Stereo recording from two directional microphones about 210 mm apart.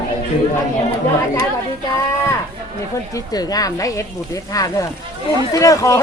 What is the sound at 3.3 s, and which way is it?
A woman's voice, 15° left (ahead or behind).